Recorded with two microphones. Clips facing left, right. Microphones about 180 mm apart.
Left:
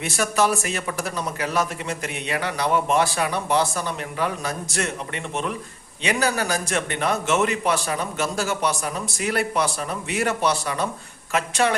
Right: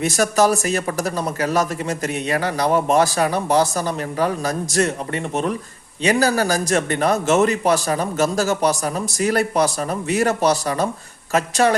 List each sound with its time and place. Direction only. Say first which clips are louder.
0.0 s speech: right 5 dB; 40° right (ahead or behind)